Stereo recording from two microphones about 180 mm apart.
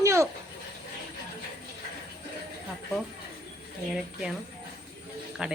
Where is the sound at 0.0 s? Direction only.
15° right (ahead or behind).